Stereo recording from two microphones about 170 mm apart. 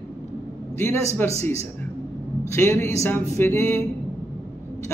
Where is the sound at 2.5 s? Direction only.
15° left (ahead or behind).